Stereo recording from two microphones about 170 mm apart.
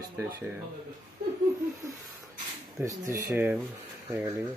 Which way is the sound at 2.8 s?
20° right (ahead or behind).